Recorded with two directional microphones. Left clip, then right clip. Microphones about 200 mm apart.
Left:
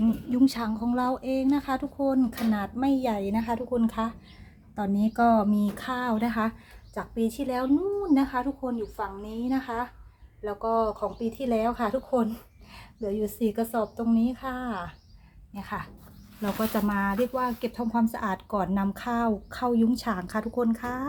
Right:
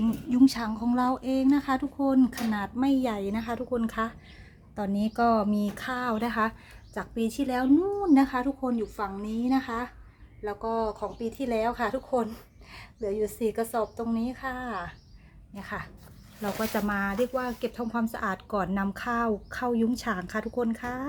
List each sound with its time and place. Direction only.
0.3 s a woman's voice: 5° right (ahead or behind)